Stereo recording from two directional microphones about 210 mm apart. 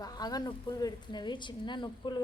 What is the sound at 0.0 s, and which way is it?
A woman's voice, 20° left (ahead or behind).